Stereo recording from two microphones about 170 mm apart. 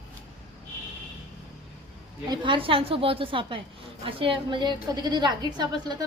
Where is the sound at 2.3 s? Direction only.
30° right (ahead or behind).